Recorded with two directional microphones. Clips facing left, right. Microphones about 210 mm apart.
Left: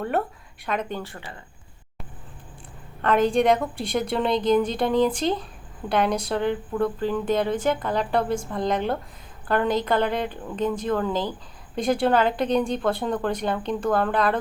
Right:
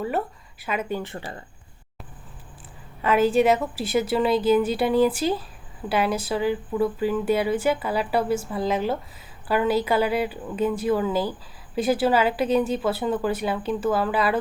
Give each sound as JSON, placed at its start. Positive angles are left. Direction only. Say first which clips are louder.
{"t": 0.6, "sound": "speech", "louder": "right 1 dB", "side_deg": -5}
{"t": 3.0, "sound": "speech", "louder": "right 1 dB", "side_deg": -5}